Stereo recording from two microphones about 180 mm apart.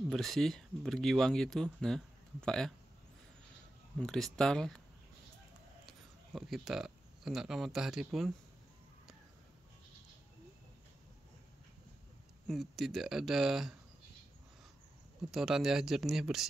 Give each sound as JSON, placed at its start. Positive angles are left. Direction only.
{"t": 0.1, "sound": "speech", "side_deg": 0}
{"t": 4.0, "sound": "speech", "side_deg": 5}
{"t": 5.9, "sound": "speech", "side_deg": 0}
{"t": 12.4, "sound": "speech", "side_deg": 0}
{"t": 15.3, "sound": "speech", "side_deg": 0}